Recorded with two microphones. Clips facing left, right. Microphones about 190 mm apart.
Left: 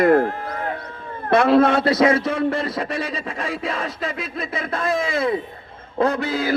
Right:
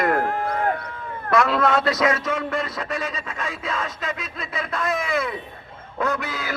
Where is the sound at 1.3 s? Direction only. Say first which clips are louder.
Left 5 dB; 30° left (ahead or behind).